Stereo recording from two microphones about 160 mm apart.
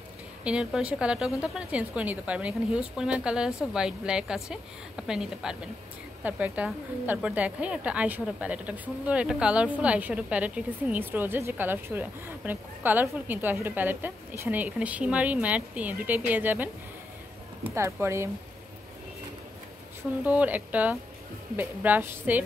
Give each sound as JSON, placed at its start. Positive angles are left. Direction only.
{"t": 0.4, "sound": "a woman's voice", "side_deg": -5}
{"t": 20.2, "sound": "a woman's voice", "side_deg": -10}